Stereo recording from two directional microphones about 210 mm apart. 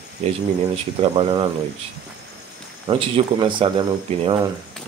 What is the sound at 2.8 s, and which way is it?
A man's voice, 25° right (ahead or behind).